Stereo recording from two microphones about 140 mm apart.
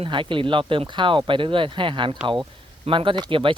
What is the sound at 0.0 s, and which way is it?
Speech, 35° right (ahead or behind).